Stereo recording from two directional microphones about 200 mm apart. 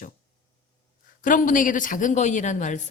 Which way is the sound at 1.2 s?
40° left (ahead or behind).